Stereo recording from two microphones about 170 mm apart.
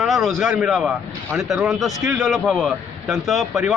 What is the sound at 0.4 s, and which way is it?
A man's voice, centre (ahead or behind).